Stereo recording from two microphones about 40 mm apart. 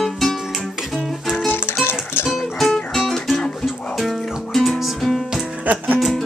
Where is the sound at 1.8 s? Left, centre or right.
Left.